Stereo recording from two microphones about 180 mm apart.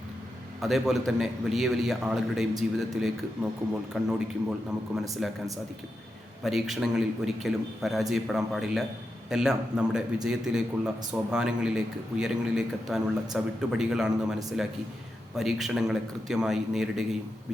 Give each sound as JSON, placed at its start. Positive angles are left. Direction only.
{"t": 0.6, "sound": "a man's voice", "side_deg": 0}
{"t": 6.4, "sound": "a man's voice", "side_deg": 0}
{"t": 15.4, "sound": "a man's voice", "side_deg": 0}